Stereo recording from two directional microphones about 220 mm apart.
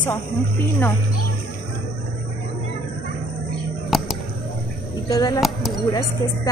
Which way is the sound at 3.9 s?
Centre (ahead or behind).